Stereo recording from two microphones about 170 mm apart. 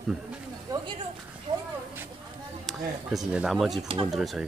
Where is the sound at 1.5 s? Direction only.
30° right (ahead or behind).